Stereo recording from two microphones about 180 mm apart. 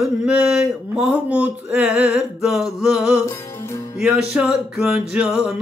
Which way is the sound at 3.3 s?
15° left (ahead or behind).